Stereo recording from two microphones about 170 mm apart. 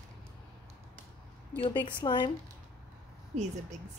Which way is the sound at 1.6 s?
30° left (ahead or behind).